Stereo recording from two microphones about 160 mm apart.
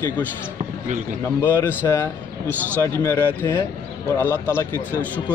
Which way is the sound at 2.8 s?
15° left (ahead or behind).